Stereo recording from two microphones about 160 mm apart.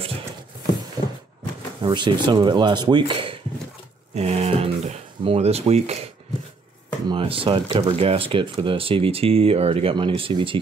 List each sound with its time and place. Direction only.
1.0 s a sound: 25° right (ahead or behind)
1.8 s speech: 30° right (ahead or behind)
7.1 s speech: 35° right (ahead or behind)